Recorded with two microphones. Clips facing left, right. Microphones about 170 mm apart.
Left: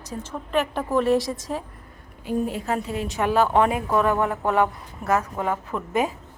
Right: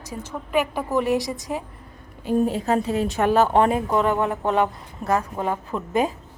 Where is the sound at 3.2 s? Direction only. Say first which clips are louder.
Right 1 dB; 45° right (ahead or behind).